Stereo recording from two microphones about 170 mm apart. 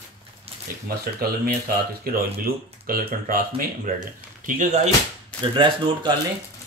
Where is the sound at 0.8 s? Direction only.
60° right (ahead or behind).